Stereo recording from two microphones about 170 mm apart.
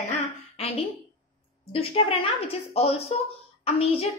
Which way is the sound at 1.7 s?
35° left (ahead or behind).